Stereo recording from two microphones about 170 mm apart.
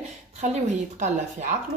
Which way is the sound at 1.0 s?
45° right (ahead or behind).